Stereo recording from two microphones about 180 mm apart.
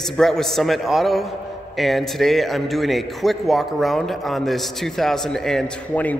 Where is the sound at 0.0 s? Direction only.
Centre (ahead or behind).